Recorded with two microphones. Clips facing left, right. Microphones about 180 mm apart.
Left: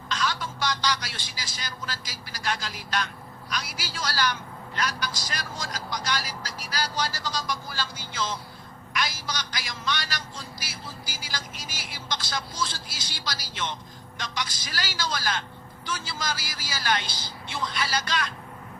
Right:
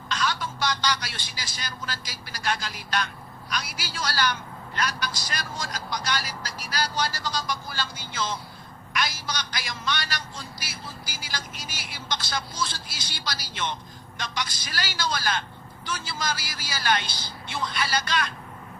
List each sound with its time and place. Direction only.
0.1 s a man's voice: 60° right (ahead or behind)